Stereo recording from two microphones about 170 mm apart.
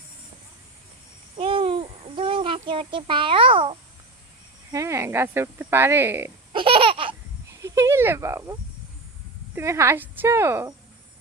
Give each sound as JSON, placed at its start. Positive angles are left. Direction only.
{"t": 1.4, "sound": "a sound", "side_deg": -30}
{"t": 4.7, "sound": "speech", "side_deg": -20}
{"t": 6.5, "sound": "laughter", "side_deg": -30}
{"t": 7.6, "sound": "snake", "side_deg": -15}
{"t": 9.6, "sound": "speech", "side_deg": -15}